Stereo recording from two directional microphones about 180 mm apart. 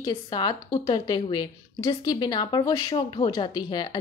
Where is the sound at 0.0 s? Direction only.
25° left (ahead or behind).